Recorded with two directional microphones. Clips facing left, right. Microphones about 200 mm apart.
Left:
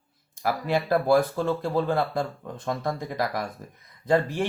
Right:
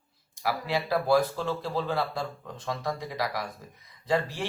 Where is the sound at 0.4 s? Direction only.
50° left (ahead or behind).